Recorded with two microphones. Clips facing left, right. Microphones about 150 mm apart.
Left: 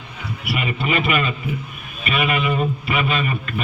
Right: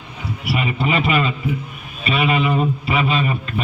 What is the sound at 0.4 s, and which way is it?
A man's voice, 30° right (ahead or behind).